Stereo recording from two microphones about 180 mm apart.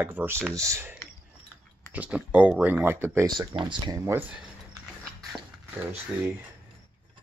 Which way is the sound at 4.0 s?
15° right (ahead or behind).